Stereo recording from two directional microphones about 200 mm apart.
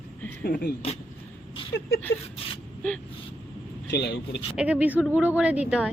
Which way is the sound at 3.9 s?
55° left (ahead or behind).